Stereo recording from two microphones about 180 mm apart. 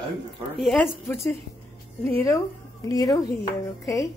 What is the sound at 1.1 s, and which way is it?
Speech, 15° left (ahead or behind).